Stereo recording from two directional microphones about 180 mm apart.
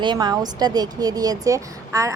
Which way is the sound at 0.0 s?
25° right (ahead or behind).